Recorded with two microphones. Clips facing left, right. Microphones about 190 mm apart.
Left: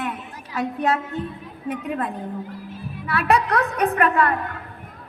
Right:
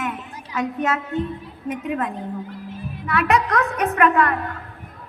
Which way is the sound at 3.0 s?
35° left (ahead or behind).